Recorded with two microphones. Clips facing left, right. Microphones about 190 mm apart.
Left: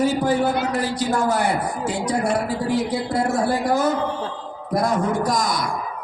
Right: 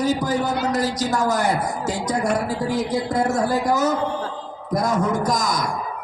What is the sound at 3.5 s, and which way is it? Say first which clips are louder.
Speech: even; 40° right (ahead or behind).